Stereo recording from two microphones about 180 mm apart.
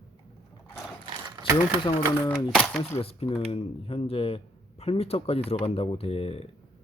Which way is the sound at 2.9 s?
35° left (ahead or behind).